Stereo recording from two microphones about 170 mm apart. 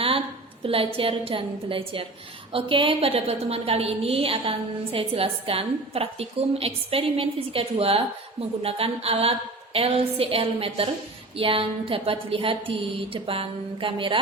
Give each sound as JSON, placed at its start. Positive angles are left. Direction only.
{"t": 0.6, "sound": "a woman's voice", "side_deg": -35}